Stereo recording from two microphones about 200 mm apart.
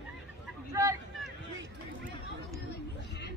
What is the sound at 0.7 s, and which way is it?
Speech, 15° right (ahead or behind).